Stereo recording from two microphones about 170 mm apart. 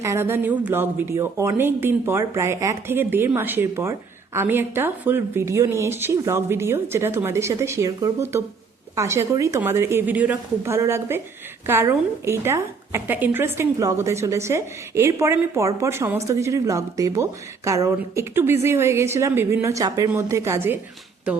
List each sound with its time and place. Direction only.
0.0 s a woman's voice: 15° right (ahead or behind)